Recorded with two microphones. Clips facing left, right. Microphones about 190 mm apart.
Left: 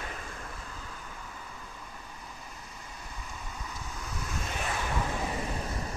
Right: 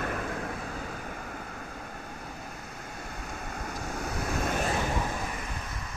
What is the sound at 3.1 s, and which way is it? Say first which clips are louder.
Vehicle: right 5 dB; 60° right (ahead or behind).